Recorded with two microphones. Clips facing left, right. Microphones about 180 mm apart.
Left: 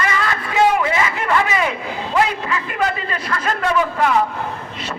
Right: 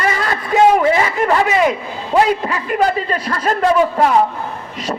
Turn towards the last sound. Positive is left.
turn(degrees=-35)  # may be behind; listen again after turning